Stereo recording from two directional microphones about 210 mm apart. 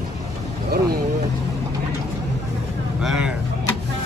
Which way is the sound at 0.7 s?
50° right (ahead or behind).